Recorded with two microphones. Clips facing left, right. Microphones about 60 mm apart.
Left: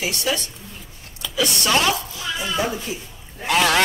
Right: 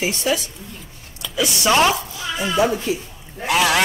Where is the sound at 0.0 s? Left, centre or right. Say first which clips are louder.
Right 3 dB; right.